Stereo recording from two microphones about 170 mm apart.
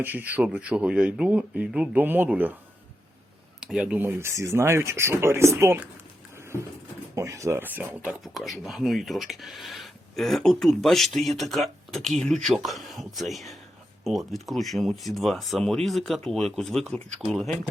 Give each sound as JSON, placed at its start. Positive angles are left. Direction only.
{"t": 0.0, "sound": "speech", "side_deg": -10}
{"t": 3.6, "sound": "speech", "side_deg": -5}
{"t": 6.3, "sound": "a sound", "side_deg": -15}
{"t": 7.2, "sound": "speech", "side_deg": -15}
{"t": 8.2, "sound": "speech", "side_deg": 0}